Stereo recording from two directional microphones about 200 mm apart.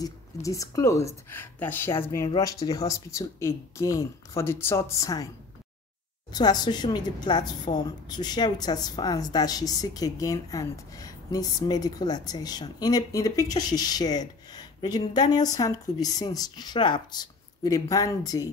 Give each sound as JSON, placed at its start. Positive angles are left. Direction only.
{"t": 0.0, "sound": "speech", "side_deg": 15}
{"t": 6.3, "sound": "a woman's voice", "side_deg": 20}